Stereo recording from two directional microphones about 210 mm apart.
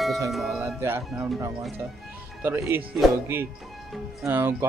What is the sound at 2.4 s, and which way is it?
Speech, 10° right (ahead or behind).